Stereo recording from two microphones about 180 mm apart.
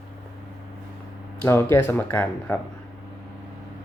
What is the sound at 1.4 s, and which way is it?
Speech, 15° left (ahead or behind).